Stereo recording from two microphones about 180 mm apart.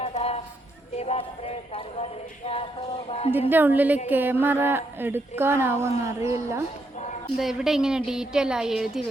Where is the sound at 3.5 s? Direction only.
10° right (ahead or behind).